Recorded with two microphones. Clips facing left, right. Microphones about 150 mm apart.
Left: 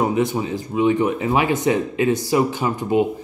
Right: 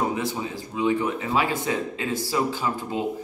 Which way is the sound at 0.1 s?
20° left (ahead or behind).